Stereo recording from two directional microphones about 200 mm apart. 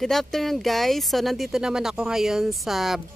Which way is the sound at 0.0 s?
Centre (ahead or behind).